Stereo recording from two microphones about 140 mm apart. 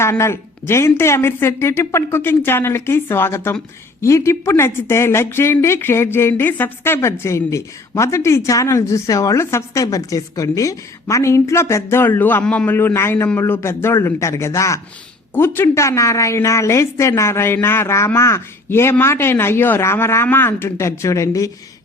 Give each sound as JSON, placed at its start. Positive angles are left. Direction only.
{"t": 0.0, "sound": "a woman's voice", "side_deg": 20}